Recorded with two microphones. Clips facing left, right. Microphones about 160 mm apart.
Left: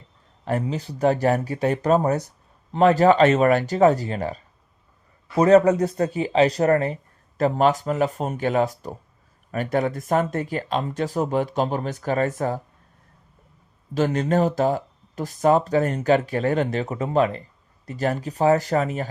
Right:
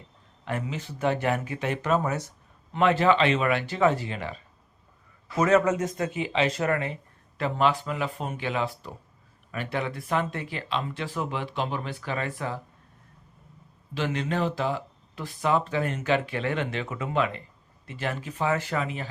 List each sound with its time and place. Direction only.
0.4 s speech: 40° left (ahead or behind)
13.9 s speech: 45° left (ahead or behind)